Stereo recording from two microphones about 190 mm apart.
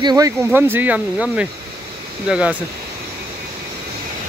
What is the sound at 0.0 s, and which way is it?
Speech, 20° right (ahead or behind).